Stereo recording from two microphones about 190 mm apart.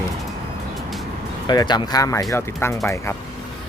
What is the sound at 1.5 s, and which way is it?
Speech, 20° left (ahead or behind).